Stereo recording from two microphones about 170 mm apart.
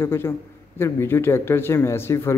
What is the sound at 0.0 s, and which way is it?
A man's voice, 15° left (ahead or behind).